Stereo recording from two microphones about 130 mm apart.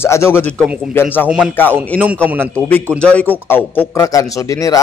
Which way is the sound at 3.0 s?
10° left (ahead or behind).